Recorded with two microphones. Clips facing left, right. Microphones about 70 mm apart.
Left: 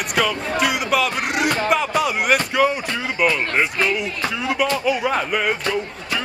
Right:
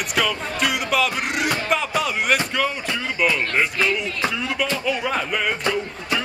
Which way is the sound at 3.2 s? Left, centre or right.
Centre.